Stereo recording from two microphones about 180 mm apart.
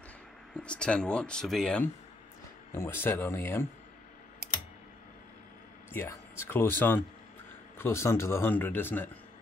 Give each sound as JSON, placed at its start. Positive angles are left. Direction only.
{"t": 0.6, "sound": "speech", "side_deg": 5}
{"t": 2.7, "sound": "a man's voice", "side_deg": 15}
{"t": 5.9, "sound": "a man's voice", "side_deg": 15}